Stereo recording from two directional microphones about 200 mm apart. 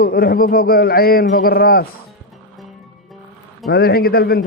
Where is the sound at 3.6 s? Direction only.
50° left (ahead or behind).